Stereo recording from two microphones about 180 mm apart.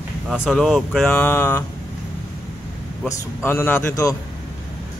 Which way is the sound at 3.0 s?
10° left (ahead or behind).